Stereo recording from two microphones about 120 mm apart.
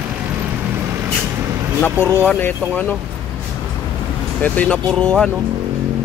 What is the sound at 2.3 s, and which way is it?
Speech, 15° left (ahead or behind).